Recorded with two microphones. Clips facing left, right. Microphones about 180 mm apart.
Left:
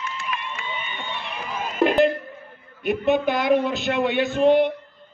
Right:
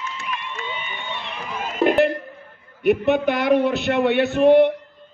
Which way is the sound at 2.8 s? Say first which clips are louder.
Right 3 dB; 65° right (ahead or behind).